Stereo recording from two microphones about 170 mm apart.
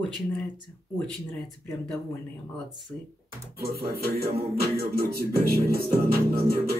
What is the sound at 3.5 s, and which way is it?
Music, 65° right (ahead or behind).